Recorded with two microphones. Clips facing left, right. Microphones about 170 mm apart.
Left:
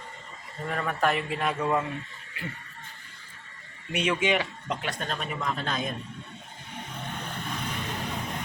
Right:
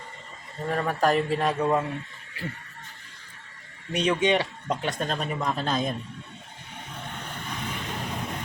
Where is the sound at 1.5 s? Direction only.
15° right (ahead or behind).